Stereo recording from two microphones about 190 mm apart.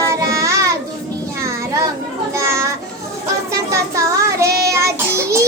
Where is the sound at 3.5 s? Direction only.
15° right (ahead or behind).